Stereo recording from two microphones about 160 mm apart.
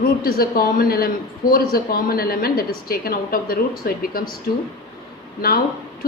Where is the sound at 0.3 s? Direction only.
65° left (ahead or behind).